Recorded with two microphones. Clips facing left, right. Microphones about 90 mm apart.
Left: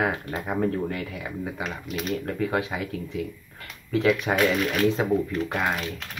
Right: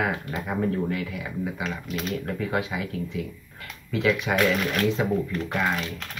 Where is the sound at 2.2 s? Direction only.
35° left (ahead or behind).